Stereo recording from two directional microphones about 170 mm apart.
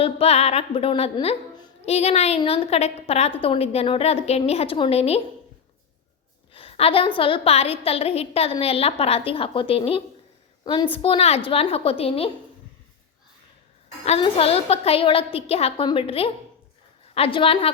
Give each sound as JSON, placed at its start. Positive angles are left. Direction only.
{"t": 0.0, "sound": "a woman's voice", "side_deg": 35}
{"t": 6.5, "sound": "a sound", "side_deg": 35}
{"t": 7.2, "sound": "a woman's voice", "side_deg": 30}
{"t": 14.0, "sound": "a woman's voice", "side_deg": 35}